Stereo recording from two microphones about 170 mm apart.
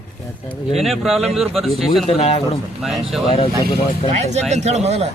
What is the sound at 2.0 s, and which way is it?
Speech, 35° left (ahead or behind).